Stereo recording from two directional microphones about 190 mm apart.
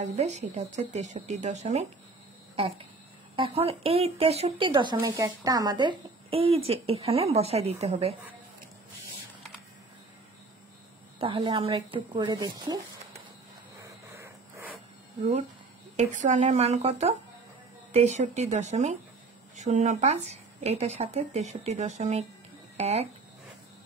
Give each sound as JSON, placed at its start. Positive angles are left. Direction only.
{"t": 0.0, "sound": "speech", "side_deg": -35}
{"t": 3.3, "sound": "speech", "side_deg": -30}
{"t": 11.1, "sound": "speech", "side_deg": -30}
{"t": 13.8, "sound": "a sound", "side_deg": -15}
{"t": 16.0, "sound": "speech", "side_deg": -40}